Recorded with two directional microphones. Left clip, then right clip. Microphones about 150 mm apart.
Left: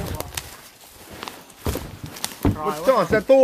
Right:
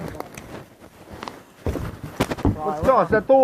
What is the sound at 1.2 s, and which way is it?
Walk, 60° right (ahead or behind).